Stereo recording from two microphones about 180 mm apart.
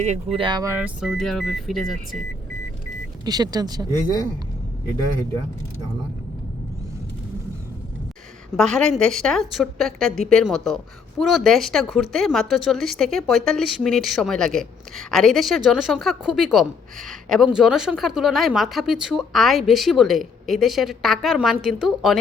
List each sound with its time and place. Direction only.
0.3 s speech: 25° right (ahead or behind)
0.7 s speech: 5° right (ahead or behind)
3.2 s speech: 20° right (ahead or behind)
8.5 s speech: 5° left (ahead or behind)